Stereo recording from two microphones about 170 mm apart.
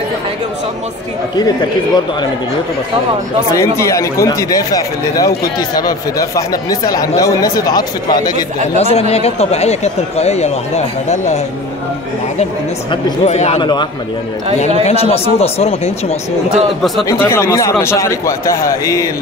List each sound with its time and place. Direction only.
3.5 s speech: 15° left (ahead or behind)
8.7 s speech: 35° left (ahead or behind)
12.9 s speech: 40° left (ahead or behind)
13.6 s speech: 25° left (ahead or behind)
14.9 s speech: 35° left (ahead or behind)
16.5 s speech: centre (ahead or behind)
17.2 s speech: 15° left (ahead or behind)